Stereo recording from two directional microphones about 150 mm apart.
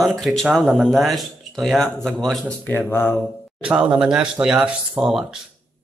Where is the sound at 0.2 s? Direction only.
Centre (ahead or behind).